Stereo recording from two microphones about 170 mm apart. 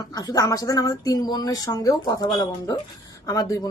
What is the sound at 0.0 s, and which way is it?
Speech, 20° left (ahead or behind).